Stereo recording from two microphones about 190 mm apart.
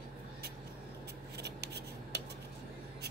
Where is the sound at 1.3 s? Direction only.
60° right (ahead or behind).